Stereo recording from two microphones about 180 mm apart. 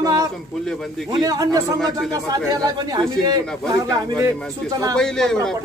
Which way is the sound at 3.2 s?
20° right (ahead or behind).